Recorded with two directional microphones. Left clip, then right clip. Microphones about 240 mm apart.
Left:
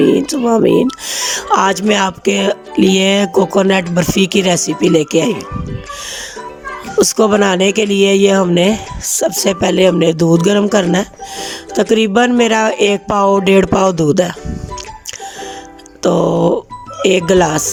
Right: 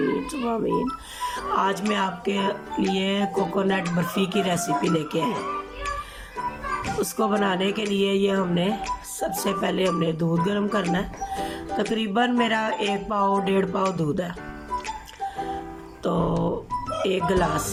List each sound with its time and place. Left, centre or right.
0.0 s speech: left
7.0 s speech: left
16.0 s speech: left